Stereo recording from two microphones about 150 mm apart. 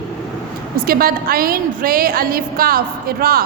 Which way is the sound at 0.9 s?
80° right.